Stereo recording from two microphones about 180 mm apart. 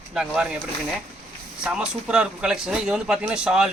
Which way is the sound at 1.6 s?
5° right (ahead or behind).